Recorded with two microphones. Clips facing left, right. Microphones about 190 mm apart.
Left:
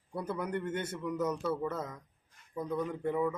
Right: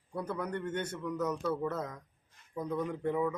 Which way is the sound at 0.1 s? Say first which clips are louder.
Left 1 dB; 5° left (ahead or behind).